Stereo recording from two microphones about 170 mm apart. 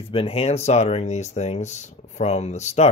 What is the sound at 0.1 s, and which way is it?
Speech, 35° left (ahead or behind).